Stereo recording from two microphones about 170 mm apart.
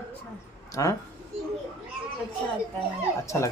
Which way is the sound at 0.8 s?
20° left (ahead or behind).